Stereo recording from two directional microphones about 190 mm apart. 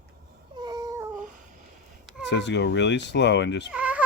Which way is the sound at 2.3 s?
65° left (ahead or behind).